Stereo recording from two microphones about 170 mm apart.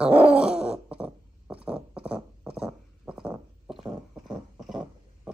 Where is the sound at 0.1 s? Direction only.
35° right (ahead or behind).